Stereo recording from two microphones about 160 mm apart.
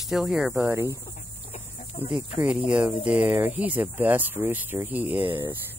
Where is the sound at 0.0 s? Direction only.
Centre (ahead or behind).